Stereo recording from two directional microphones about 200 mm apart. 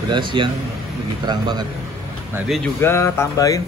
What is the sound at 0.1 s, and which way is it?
A man's voice, 25° right (ahead or behind).